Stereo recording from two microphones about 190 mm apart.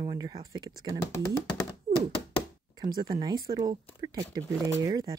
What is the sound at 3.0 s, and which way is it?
Speech, 25° right (ahead or behind).